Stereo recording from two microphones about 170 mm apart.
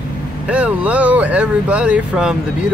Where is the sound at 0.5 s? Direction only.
5° right (ahead or behind).